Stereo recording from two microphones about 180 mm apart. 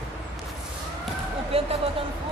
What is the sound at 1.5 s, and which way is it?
Speech, 35° right (ahead or behind).